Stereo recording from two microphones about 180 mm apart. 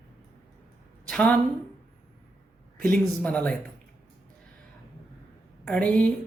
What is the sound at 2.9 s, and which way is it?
Speech, 5° left (ahead or behind).